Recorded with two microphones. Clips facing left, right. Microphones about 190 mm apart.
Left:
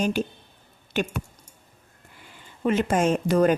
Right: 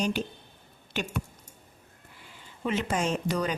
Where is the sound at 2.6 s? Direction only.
50° left (ahead or behind).